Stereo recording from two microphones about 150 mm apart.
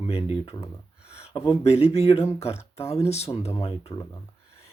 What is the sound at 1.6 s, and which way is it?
Speech, 45° left (ahead or behind).